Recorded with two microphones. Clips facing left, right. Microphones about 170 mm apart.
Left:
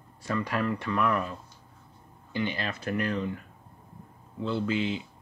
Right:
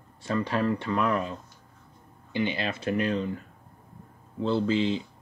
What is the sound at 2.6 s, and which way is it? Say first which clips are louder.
Speech: right 3 dB; 30° right (ahead or behind).